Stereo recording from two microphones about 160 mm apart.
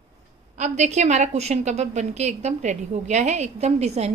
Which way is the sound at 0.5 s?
45° right (ahead or behind).